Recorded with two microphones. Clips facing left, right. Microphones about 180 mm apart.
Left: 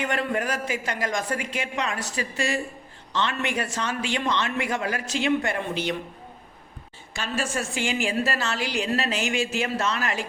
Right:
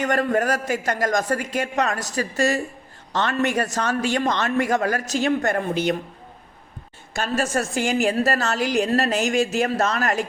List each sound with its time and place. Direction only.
0.0 s a man's voice: 40° right (ahead or behind)
7.1 s a woman's voice: 45° right (ahead or behind)